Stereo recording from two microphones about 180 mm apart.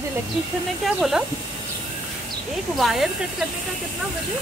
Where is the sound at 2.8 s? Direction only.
Centre (ahead or behind).